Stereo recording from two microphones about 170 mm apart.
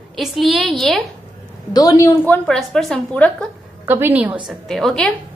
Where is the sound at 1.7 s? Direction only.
20° left (ahead or behind).